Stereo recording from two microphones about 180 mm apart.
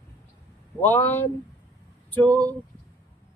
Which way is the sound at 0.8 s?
10° left (ahead or behind).